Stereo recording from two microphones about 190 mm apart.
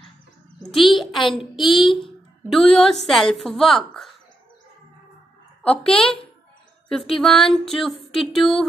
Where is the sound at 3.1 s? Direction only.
Centre (ahead or behind).